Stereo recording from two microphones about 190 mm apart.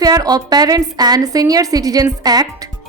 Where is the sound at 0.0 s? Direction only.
20° right (ahead or behind).